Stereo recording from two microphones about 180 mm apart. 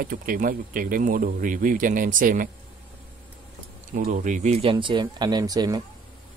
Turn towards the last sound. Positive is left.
turn(degrees=-20)  # may be behind; listen again after turning